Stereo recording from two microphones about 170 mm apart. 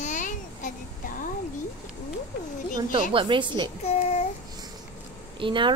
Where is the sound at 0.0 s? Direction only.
45° left (ahead or behind).